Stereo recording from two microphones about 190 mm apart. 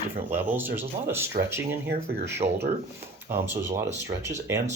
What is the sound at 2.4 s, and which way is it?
Speech, 35° right (ahead or behind).